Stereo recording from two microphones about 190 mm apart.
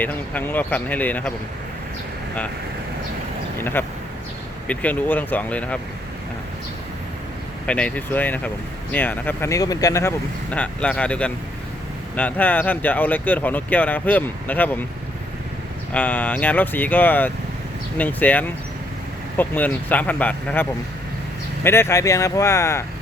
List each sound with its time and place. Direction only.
0.0 s speech: 10° left (ahead or behind)
3.6 s speech: 10° left (ahead or behind)
7.7 s speech: 5° left (ahead or behind)
15.9 s speech: 10° left (ahead or behind)